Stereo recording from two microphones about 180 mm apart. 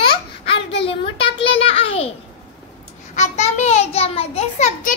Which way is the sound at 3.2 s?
40° left (ahead or behind).